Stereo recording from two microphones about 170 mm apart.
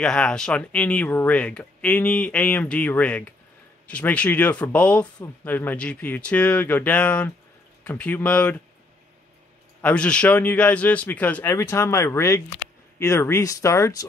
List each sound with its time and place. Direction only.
0.0 s speech: 5° left (ahead or behind)
9.8 s speech: 10° left (ahead or behind)